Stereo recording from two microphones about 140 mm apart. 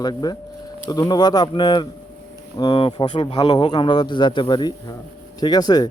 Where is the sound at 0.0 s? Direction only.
30° left (ahead or behind).